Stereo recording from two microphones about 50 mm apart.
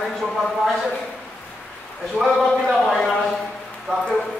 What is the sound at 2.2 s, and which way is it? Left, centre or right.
Speech, centre.